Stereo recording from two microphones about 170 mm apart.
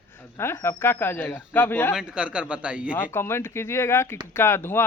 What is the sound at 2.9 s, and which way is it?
A man's voice, 15° left (ahead or behind).